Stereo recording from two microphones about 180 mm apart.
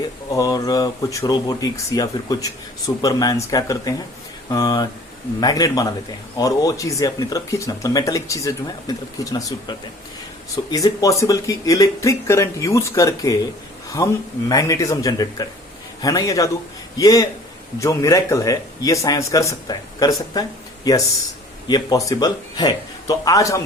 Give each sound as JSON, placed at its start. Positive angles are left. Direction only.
{"t": 0.3, "sound": "speech", "side_deg": 20}
{"t": 21.7, "sound": "speech", "side_deg": 20}